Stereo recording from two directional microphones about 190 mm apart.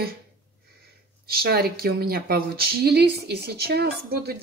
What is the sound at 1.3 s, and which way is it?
Speech, 55° right (ahead or behind).